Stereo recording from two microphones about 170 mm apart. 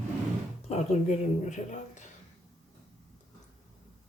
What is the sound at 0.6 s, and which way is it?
Speech, 40° left (ahead or behind).